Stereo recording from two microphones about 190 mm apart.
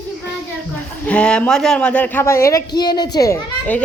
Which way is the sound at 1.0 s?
5° left (ahead or behind).